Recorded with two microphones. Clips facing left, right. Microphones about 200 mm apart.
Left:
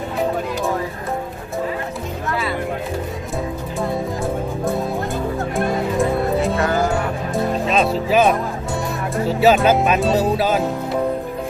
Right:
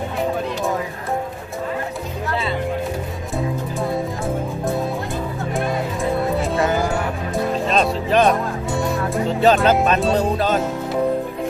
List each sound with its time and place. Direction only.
5.5 s music: centre (ahead or behind)
7.7 s music: centre (ahead or behind)
8.8 s speech: 5° left (ahead or behind)